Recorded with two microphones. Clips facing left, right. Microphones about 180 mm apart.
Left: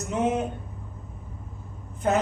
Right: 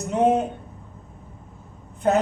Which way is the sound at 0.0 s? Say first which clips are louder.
Right 5 dB; 35° right (ahead or behind).